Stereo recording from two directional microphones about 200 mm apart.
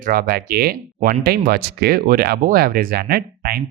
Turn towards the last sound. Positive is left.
turn(degrees=-50)  # may be behind; listen again after turning